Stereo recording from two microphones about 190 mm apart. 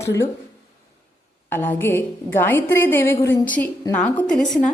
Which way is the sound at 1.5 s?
10° left (ahead or behind).